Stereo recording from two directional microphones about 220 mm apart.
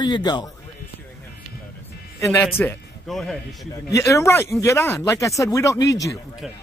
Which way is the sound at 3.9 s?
15° left (ahead or behind).